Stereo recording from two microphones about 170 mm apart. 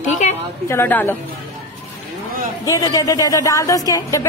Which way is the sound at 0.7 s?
10° left (ahead or behind).